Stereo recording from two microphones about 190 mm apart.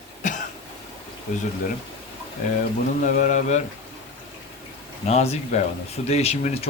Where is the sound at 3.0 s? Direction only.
40° left (ahead or behind).